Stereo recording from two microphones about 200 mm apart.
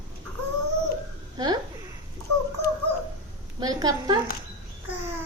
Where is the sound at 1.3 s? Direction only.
20° right (ahead or behind).